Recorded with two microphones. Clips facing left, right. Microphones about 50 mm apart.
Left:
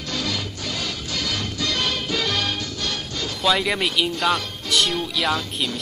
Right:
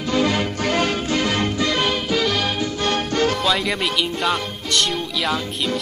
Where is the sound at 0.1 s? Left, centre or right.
Right.